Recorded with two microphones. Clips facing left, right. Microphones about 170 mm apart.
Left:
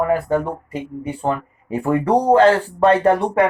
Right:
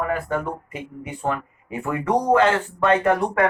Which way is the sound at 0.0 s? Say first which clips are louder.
Left 6 dB; 35° left (ahead or behind).